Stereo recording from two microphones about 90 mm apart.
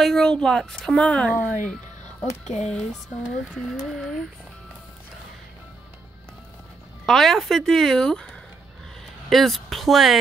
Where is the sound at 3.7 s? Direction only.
Centre (ahead or behind).